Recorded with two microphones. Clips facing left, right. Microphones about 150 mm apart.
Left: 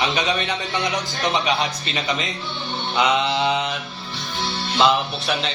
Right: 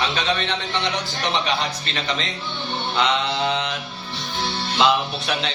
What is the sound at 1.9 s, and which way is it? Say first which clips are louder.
Mantra: left 1 dB; 10° left (ahead or behind).